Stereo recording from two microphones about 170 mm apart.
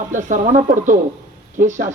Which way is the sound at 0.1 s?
50° right (ahead or behind).